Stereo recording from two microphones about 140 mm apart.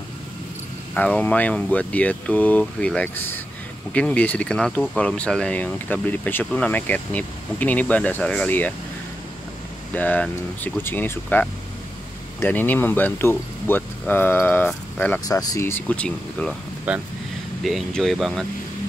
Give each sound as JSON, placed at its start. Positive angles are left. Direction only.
{"t": 0.9, "sound": "speech", "side_deg": 10}
{"t": 9.9, "sound": "speech", "side_deg": 10}
{"t": 15.2, "sound": "speech", "side_deg": 25}
{"t": 16.9, "sound": "speech", "side_deg": -10}
{"t": 17.6, "sound": "speech", "side_deg": 0}